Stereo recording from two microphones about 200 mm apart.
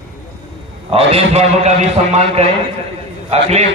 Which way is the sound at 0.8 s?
30° right (ahead or behind).